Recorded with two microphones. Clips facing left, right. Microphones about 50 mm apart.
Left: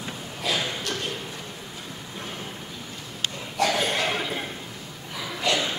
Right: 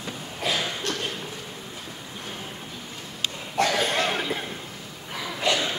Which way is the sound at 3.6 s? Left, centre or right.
Right.